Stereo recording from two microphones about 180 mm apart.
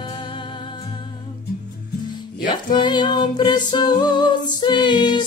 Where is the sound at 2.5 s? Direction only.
25° left (ahead or behind).